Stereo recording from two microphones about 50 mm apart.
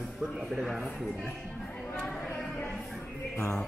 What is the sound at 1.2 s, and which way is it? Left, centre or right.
Speech, left.